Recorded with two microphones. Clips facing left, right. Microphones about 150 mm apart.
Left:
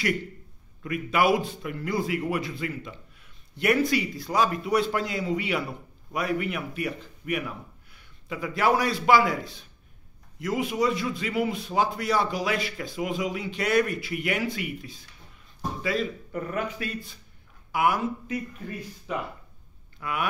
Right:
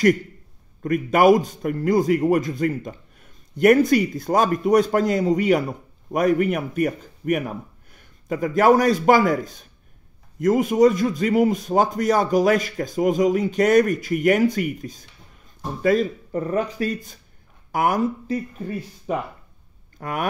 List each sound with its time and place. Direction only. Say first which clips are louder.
0.8 s a man's voice: right 8 dB; 45° right (ahead or behind)
16.3 s a man's voice: right 7 dB; 35° right (ahead or behind)